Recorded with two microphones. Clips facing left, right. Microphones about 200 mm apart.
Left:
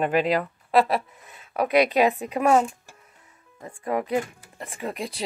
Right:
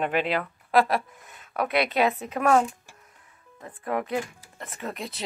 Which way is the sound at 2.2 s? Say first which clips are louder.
Left 2 dB; 10° left (ahead or behind).